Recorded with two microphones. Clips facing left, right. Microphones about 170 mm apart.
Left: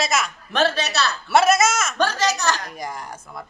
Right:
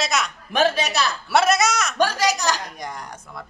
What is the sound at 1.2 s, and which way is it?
Speech, centre (ahead or behind).